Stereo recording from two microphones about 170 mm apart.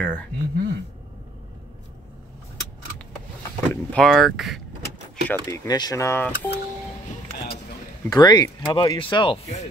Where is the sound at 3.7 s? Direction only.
5° left (ahead or behind).